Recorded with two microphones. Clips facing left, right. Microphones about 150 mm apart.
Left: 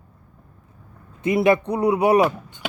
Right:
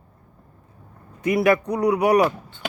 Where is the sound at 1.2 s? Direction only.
25° left (ahead or behind).